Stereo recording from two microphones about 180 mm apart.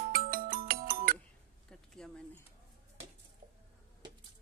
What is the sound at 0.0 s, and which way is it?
Music, 55° right (ahead or behind).